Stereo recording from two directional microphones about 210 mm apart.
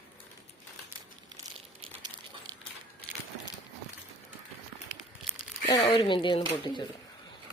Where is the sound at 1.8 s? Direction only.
20° right (ahead or behind).